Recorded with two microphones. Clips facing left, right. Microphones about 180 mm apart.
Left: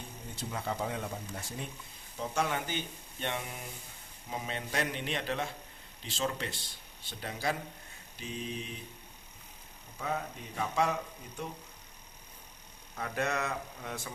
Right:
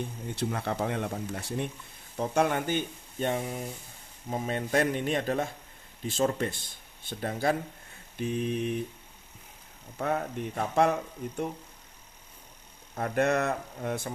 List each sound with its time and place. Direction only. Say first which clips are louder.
0.3 s speech: right 5 dB; 65° right (ahead or behind)
10.0 s speech: right 6 dB; 60° right (ahead or behind)
13.0 s speech: right 7 dB; 55° right (ahead or behind)